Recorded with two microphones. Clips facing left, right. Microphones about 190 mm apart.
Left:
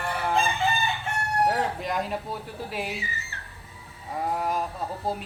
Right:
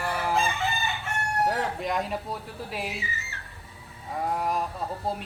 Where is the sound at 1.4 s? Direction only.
Centre (ahead or behind).